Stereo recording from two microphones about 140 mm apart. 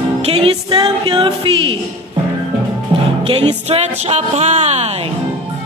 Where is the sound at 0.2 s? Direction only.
45° right (ahead or behind).